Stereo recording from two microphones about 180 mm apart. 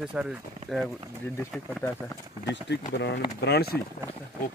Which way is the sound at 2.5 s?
75° left (ahead or behind).